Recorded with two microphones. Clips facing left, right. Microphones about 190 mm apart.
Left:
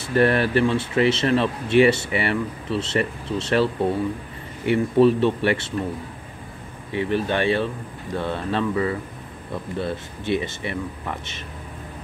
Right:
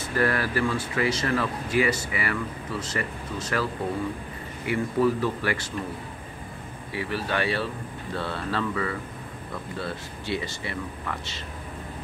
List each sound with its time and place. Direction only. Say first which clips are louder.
0.1 s speech: left 7 dB; 25° left (ahead or behind)
6.9 s speech: left 6 dB; 20° left (ahead or behind)